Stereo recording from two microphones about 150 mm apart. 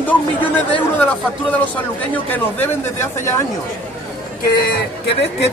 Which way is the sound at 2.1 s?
10° left (ahead or behind).